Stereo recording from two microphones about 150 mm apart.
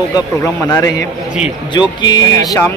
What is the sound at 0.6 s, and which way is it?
Speech, 25° left (ahead or behind).